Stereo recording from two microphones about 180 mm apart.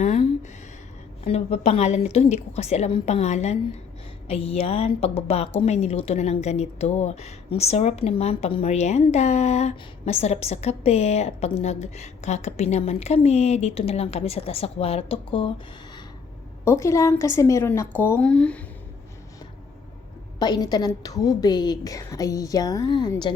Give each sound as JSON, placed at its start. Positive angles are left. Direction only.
{"t": 0.0, "sound": "a sound", "side_deg": 40}
{"t": 1.2, "sound": "a woman's voice", "side_deg": 35}
{"t": 16.6, "sound": "speech", "side_deg": 15}
{"t": 20.4, "sound": "a woman's voice", "side_deg": 20}